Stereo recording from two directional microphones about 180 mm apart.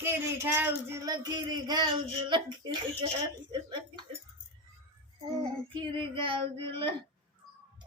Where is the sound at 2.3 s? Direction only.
25° right (ahead or behind).